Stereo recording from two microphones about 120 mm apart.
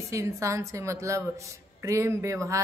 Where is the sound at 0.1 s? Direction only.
25° right (ahead or behind).